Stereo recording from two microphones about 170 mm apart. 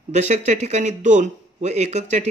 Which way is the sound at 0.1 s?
45° right (ahead or behind).